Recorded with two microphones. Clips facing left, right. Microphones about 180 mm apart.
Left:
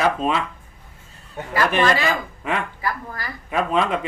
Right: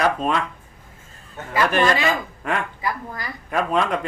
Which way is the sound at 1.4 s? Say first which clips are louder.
Left 3 dB; 10° left (ahead or behind).